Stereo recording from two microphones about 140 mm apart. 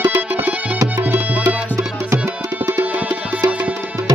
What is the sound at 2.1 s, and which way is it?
Tabla, 20° right (ahead or behind).